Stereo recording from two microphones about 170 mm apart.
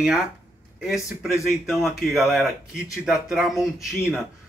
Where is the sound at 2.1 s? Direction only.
Centre (ahead or behind).